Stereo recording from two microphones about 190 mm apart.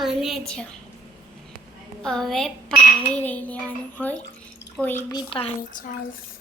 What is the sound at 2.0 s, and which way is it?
Speech, 5° left (ahead or behind).